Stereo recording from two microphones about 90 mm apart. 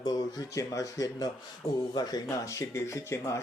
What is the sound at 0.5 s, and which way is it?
Speech, 35° left (ahead or behind).